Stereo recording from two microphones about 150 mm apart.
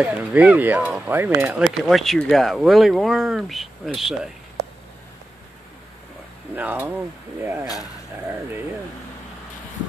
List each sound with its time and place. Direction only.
0.0 s speech: 10° right (ahead or behind)
6.5 s speech: 10° right (ahead or behind)
7.6 s speech: 25° left (ahead or behind)
8.3 s speech: 15° right (ahead or behind)